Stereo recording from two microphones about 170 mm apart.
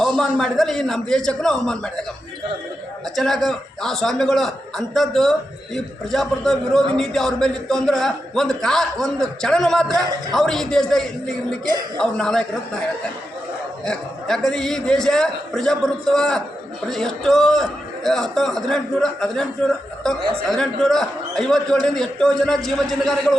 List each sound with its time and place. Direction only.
0.0 s a man's voice: centre (ahead or behind)
3.2 s a man's voice: centre (ahead or behind)
11.6 s speech: 25° right (ahead or behind)
11.9 s a man's voice: 5° left (ahead or behind)
13.8 s a man's voice: 5° left (ahead or behind)